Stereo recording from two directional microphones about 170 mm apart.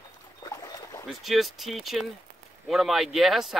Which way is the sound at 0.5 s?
20° left (ahead or behind).